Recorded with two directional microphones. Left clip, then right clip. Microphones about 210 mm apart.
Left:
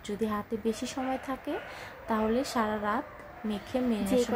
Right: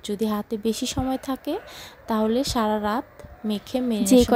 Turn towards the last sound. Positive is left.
turn(degrees=-40)  # may be behind; listen again after turning